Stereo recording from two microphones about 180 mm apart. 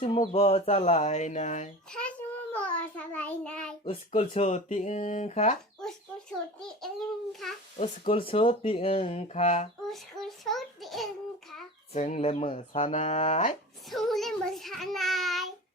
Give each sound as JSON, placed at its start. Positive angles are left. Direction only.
{"t": 0.0, "sound": "speech", "side_deg": 30}
{"t": 1.9, "sound": "a child's voice", "side_deg": 5}
{"t": 3.8, "sound": "speech", "side_deg": 35}
{"t": 7.8, "sound": "speech", "side_deg": 30}
{"t": 9.8, "sound": "a child's voice", "side_deg": 0}
{"t": 11.9, "sound": "speech", "side_deg": 35}
{"t": 13.8, "sound": "a child's voice", "side_deg": 0}